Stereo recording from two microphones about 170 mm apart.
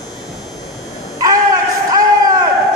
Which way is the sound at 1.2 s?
20° right (ahead or behind).